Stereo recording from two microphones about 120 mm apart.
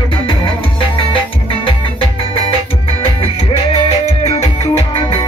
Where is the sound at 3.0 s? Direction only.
50° left (ahead or behind).